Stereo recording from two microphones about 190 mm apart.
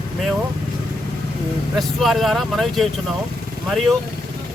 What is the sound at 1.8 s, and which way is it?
Speech, centre (ahead or behind).